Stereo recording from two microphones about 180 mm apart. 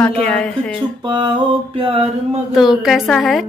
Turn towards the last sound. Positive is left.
turn(degrees=0)  # may be behind; listen again after turning